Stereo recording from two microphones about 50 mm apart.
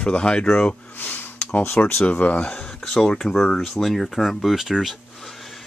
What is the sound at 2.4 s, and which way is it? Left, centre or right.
Speech, centre.